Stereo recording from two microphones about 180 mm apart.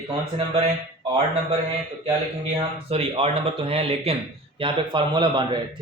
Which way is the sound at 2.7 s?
30° right (ahead or behind).